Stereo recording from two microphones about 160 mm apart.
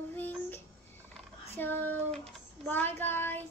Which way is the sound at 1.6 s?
10° left (ahead or behind).